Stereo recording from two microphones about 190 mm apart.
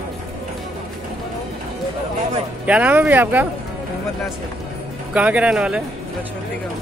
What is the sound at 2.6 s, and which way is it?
Speech, 5° right (ahead or behind).